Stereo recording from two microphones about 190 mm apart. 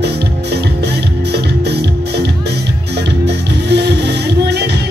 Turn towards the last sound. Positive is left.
turn(degrees=-60)  # may be behind; listen again after turning